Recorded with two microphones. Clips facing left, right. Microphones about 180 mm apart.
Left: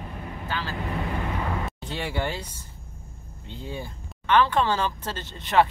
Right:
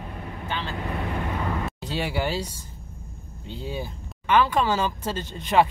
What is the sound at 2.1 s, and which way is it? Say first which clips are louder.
Speech: right 1 dB; 10° right (ahead or behind).